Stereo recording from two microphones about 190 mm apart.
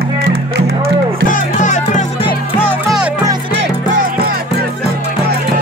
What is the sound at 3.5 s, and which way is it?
Music, 45° right (ahead or behind).